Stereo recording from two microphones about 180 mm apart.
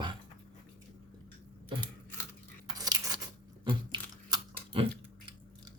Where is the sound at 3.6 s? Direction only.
25° right (ahead or behind).